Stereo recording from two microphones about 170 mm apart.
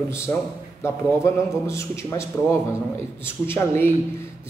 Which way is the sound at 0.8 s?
15° left (ahead or behind).